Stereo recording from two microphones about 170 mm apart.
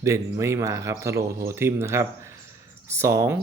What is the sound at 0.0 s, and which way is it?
A man's voice, 15° right (ahead or behind).